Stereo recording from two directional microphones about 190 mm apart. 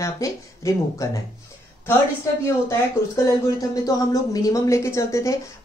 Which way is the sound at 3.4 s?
20° left (ahead or behind).